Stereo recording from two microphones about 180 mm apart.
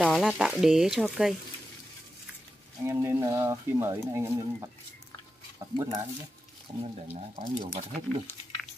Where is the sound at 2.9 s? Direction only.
15° right (ahead or behind).